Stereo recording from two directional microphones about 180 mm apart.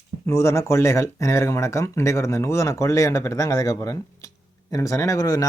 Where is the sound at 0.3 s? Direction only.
15° left (ahead or behind).